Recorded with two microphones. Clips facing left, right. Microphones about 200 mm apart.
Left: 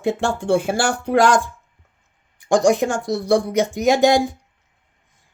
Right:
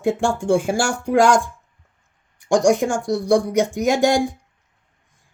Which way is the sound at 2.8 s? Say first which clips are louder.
Even; 10° right (ahead or behind).